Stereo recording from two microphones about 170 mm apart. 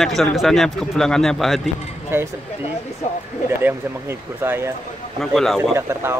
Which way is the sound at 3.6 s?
15° right (ahead or behind).